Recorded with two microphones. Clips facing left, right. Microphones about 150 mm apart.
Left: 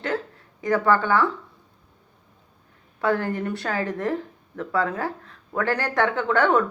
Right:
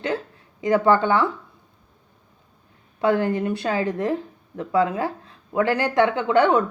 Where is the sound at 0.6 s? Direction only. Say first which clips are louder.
Right 3 dB; 20° right (ahead or behind).